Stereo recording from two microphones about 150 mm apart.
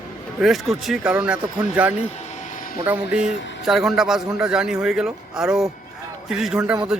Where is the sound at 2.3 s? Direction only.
60° left (ahead or behind).